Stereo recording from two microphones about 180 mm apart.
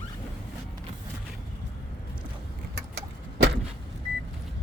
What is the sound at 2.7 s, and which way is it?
Vehicle, 75° right (ahead or behind).